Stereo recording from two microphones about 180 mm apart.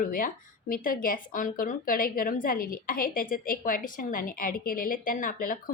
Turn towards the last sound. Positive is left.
turn(degrees=50)  # may be behind; listen again after turning